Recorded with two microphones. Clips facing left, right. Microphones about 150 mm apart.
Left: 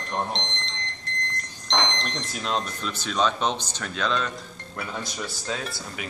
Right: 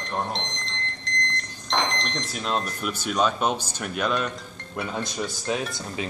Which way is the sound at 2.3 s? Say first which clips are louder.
Right 1 dB; 5° right (ahead or behind).